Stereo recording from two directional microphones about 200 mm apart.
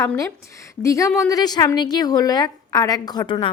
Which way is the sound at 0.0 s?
10° left (ahead or behind).